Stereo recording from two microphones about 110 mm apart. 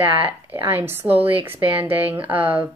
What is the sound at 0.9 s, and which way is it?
Speech, 20° right (ahead or behind).